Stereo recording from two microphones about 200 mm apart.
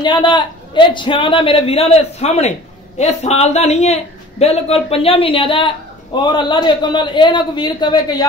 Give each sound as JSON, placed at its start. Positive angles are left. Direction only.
{"t": 0.0, "sound": "a man's voice", "side_deg": 25}